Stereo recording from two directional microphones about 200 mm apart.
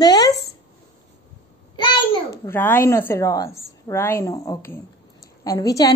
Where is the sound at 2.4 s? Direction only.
10° left (ahead or behind).